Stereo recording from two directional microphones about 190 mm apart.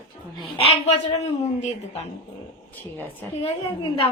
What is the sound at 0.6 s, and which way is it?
Speech, 30° left (ahead or behind).